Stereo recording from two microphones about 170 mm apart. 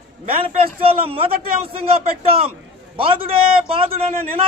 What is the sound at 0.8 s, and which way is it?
A man's voice, 35° right (ahead or behind).